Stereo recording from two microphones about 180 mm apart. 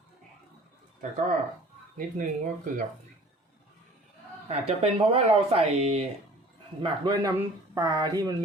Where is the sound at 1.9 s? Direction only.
45° right (ahead or behind).